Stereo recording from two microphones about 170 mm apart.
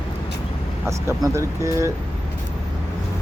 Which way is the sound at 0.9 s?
15° right (ahead or behind).